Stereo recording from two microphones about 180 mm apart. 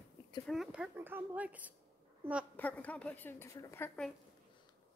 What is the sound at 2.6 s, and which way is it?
A woman's voice, 10° left (ahead or behind).